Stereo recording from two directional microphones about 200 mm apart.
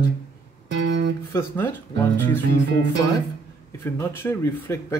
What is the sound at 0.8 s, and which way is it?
Music, 60° right (ahead or behind).